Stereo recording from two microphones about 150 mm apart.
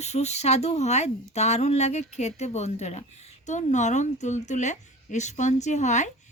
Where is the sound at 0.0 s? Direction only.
45° left (ahead or behind).